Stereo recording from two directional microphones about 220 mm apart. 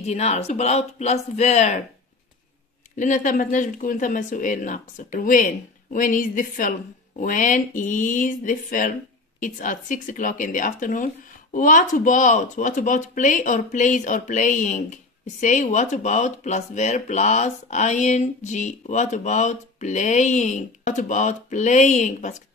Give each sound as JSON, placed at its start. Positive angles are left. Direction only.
{"t": 0.0, "sound": "speech", "side_deg": 30}
{"t": 3.0, "sound": "speech", "side_deg": 35}